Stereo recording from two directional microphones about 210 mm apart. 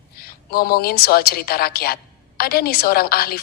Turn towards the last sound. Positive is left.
turn(degrees=45)  # may be behind; listen again after turning